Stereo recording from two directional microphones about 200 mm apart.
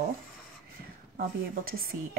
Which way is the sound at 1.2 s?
45° right (ahead or behind).